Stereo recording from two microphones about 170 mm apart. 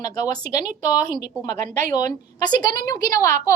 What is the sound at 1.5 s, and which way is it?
Speech, 45° right (ahead or behind).